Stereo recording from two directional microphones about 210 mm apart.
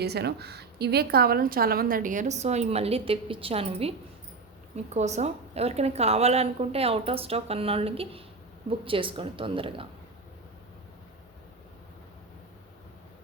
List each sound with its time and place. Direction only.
0.0 s a woman's voice: 50° right (ahead or behind); by 3.9 s 30° right (ahead or behind)
4.9 s a woman's voice: 30° right (ahead or behind)